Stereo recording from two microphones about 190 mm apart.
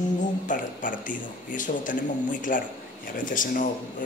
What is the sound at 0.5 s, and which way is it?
Speech, 45° left (ahead or behind).